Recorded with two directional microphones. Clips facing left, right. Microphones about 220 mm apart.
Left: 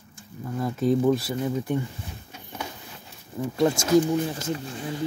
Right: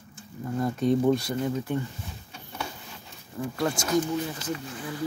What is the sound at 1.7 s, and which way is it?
Speech, 15° left (ahead or behind).